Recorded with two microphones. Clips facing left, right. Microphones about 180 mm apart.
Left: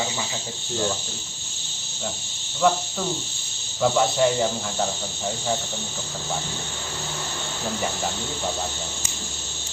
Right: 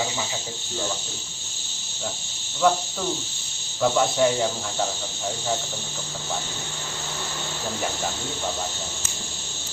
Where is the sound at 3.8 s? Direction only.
Centre (ahead or behind).